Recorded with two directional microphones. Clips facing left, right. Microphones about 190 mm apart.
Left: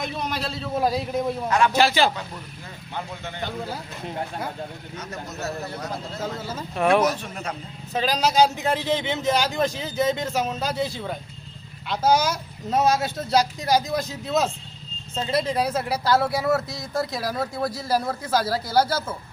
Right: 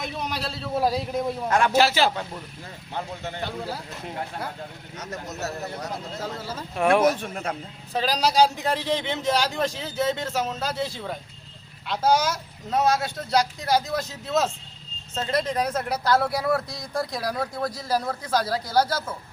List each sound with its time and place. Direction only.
0.0 s speech: centre (ahead or behind)
1.5 s a man's voice: 50° right (ahead or behind)
1.7 s speech: 5° right (ahead or behind)
2.9 s speech: 35° right (ahead or behind)
4.9 s a man's voice: 40° right (ahead or behind)
6.4 s speech: 5° left (ahead or behind)
6.7 s speech: 10° right (ahead or behind)
7.0 s a man's voice: 55° right (ahead or behind)
7.9 s speech: centre (ahead or behind)
12.7 s speech: 20° left (ahead or behind)